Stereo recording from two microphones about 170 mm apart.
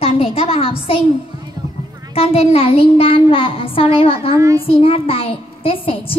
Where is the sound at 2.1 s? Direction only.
35° left (ahead or behind).